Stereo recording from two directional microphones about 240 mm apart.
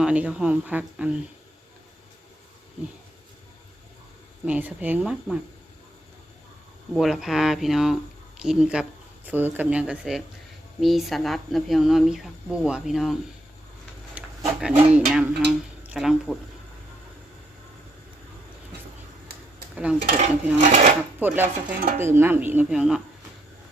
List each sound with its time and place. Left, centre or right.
0.0 s speech: centre
4.4 s speech: centre
6.9 s speech: centre
14.2 s speech: centre
19.7 s speech: centre
20.6 s speech: right
21.2 s speech: centre